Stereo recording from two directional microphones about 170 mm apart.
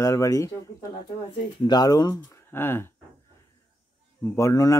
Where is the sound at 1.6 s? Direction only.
25° left (ahead or behind).